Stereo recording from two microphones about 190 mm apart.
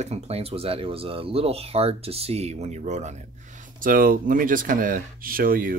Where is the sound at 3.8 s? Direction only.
50° right (ahead or behind).